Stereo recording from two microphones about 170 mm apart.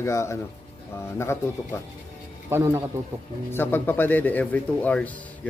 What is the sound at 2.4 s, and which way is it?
Speech, 15° right (ahead or behind).